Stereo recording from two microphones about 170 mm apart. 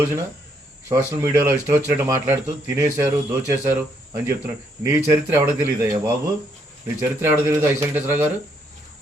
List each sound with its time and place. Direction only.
0.9 s speech: 15° right (ahead or behind)